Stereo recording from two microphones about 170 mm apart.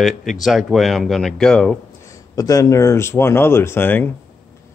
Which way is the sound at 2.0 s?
20° left (ahead or behind).